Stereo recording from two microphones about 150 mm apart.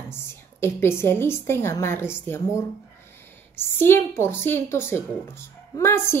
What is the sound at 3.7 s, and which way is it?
A woman's voice, 15° left (ahead or behind).